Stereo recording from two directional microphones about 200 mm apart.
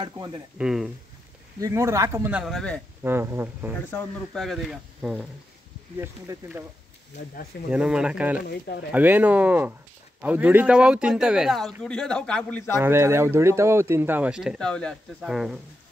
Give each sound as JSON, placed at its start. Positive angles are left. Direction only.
{"t": 0.0, "sound": "speech", "side_deg": -25}
{"t": 0.6, "sound": "speech", "side_deg": -5}
{"t": 1.6, "sound": "speech", "side_deg": -15}
{"t": 3.0, "sound": "speech", "side_deg": -10}
{"t": 3.9, "sound": "speech", "side_deg": 5}
{"t": 7.7, "sound": "speech", "side_deg": -5}
{"t": 12.7, "sound": "speech", "side_deg": -10}